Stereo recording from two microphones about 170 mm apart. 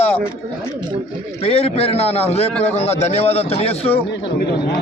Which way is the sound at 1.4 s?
35° left (ahead or behind).